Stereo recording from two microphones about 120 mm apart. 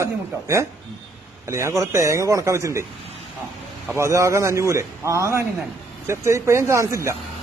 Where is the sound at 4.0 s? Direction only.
25° right (ahead or behind).